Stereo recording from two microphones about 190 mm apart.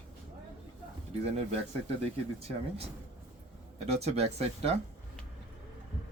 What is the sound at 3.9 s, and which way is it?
Speech, 35° right (ahead or behind).